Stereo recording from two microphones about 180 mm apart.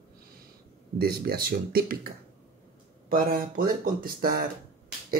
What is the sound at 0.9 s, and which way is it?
Speech, 60° right (ahead or behind).